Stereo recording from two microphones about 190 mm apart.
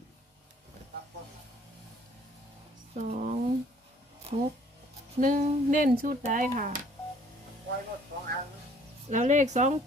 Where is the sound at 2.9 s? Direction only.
40° right (ahead or behind).